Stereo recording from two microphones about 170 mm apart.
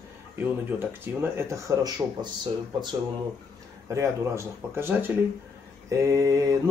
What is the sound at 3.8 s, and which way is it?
Speech, 15° right (ahead or behind).